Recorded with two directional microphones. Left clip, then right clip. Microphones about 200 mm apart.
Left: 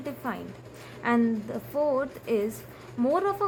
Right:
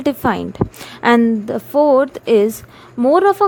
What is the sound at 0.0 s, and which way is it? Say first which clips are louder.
A woman's voice: right 17 dB; 50° right (ahead or behind).